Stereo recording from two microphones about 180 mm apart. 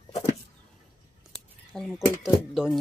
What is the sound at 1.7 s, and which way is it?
Speech, centre (ahead or behind).